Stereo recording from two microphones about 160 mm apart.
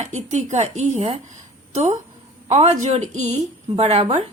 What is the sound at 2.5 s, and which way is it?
A woman's voice, 45° right (ahead or behind).